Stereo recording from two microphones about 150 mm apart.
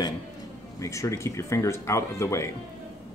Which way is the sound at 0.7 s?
20° left (ahead or behind).